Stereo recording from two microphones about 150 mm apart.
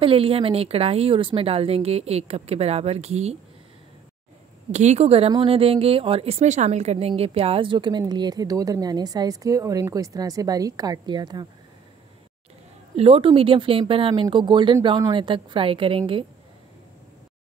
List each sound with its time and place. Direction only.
0.0 s a woman's voice: 40° right (ahead or behind)
4.6 s a woman's voice: 50° right (ahead or behind); by 11.4 s 30° right (ahead or behind)
12.9 s a woman's voice: 40° right (ahead or behind)